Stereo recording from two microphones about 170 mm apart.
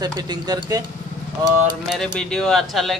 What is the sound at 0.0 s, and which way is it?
Speech, 25° right (ahead or behind).